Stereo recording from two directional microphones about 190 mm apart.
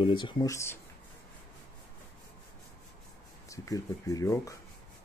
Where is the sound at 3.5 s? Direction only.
15° left (ahead or behind).